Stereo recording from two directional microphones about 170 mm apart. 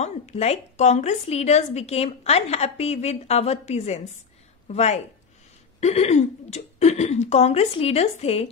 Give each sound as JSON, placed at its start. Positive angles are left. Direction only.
{"t": 0.0, "sound": "a woman's voice", "side_deg": 40}